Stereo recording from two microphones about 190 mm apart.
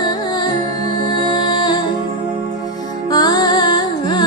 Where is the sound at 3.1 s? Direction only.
20° left (ahead or behind).